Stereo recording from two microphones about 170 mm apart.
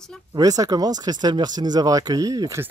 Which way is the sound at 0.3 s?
20° right (ahead or behind).